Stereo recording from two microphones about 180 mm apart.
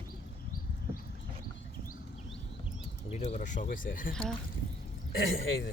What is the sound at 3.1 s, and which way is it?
Speech, 40° left (ahead or behind).